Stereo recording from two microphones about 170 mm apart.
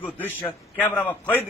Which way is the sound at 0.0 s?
10° left (ahead or behind).